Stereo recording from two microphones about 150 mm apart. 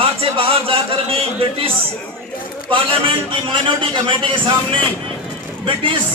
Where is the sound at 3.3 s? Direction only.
35° right (ahead or behind).